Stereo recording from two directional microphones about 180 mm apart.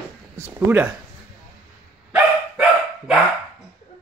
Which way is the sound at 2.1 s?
5° right (ahead or behind).